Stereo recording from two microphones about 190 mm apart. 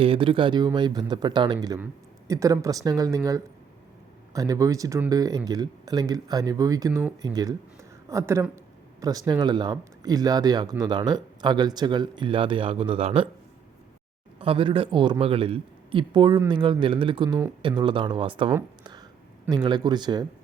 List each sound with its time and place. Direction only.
0.0 s speech: 30° right (ahead or behind)
4.4 s speech: 20° right (ahead or behind)
14.3 s speech: 30° right (ahead or behind)
18.8 s a sound: 20° right (ahead or behind)
19.5 s speech: 25° right (ahead or behind)